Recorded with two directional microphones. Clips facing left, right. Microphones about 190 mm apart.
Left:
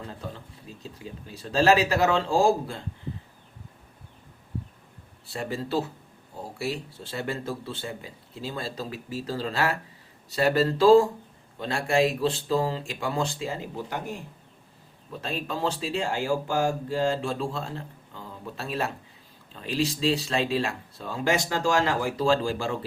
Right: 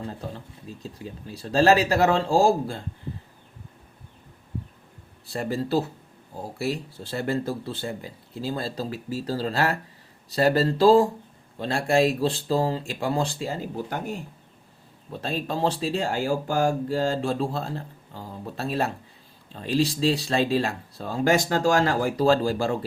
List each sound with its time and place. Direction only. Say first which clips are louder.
1.3 s speech: right 2 dB; 35° right (ahead or behind)
5.3 s speech: right 4 dB; 40° right (ahead or behind)
7.1 s speech: right 5 dB; 40° right (ahead or behind)
15.1 s speech: right 3 dB; 35° right (ahead or behind)